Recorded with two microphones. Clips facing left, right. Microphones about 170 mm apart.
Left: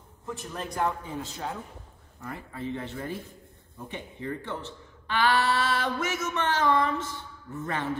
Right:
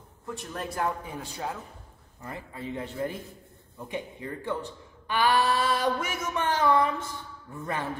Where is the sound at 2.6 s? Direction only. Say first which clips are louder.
Right 2 dB; 15° right (ahead or behind).